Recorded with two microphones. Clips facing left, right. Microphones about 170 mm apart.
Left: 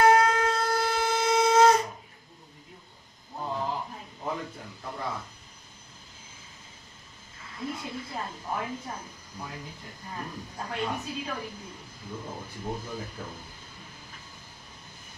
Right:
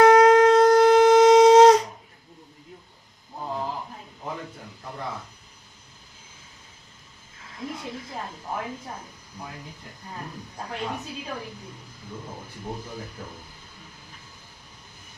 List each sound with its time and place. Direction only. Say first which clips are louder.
0.0 s shofar: right 8 dB; 90° right